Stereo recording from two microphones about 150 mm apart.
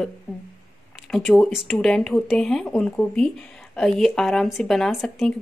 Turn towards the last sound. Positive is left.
turn(degrees=0)  # may be behind; listen again after turning